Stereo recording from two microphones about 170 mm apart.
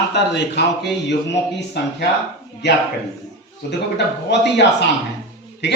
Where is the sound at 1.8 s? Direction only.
75° left (ahead or behind).